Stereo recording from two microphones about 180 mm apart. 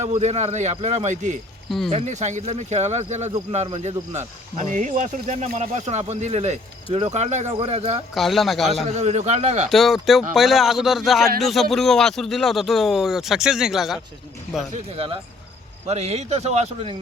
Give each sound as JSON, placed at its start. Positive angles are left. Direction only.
{"t": 0.0, "sound": "speech", "side_deg": -40}
{"t": 8.1, "sound": "speech", "side_deg": 0}
{"t": 8.9, "sound": "speech", "side_deg": -40}
{"t": 9.6, "sound": "speech", "side_deg": 0}
{"t": 14.7, "sound": "speech", "side_deg": -30}